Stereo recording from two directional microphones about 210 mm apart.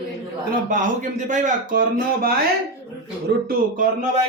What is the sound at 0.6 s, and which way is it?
Speech, 35° right (ahead or behind).